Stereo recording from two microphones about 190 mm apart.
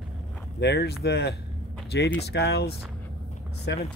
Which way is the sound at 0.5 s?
60° left (ahead or behind).